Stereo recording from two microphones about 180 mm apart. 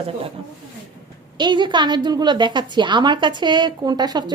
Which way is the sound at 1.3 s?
25° right (ahead or behind).